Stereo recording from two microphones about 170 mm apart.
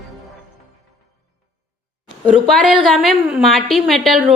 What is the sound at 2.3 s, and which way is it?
A woman's voice, centre (ahead or behind).